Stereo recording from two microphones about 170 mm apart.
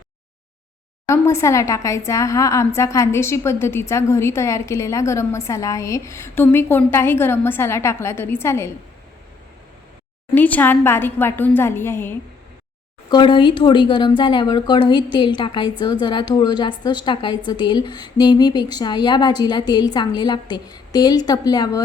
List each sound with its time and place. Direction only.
1.0 s a woman's voice: 15° left (ahead or behind)
10.3 s a woman's voice: 10° left (ahead or behind)
13.1 s a woman's voice: 30° left (ahead or behind)